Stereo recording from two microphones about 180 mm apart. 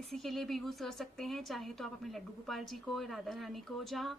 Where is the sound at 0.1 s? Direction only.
Centre (ahead or behind).